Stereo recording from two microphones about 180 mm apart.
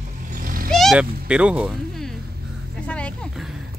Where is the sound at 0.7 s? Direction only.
Centre (ahead or behind).